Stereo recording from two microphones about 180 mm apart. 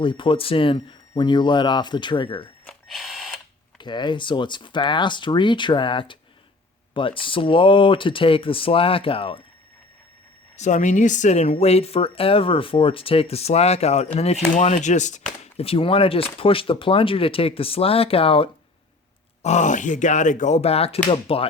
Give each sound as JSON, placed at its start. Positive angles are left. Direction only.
{"t": 0.0, "sound": "speech", "side_deg": 25}
{"t": 2.6, "sound": "a sound", "side_deg": 0}
{"t": 3.8, "sound": "speech", "side_deg": 25}
{"t": 10.6, "sound": "speech", "side_deg": 40}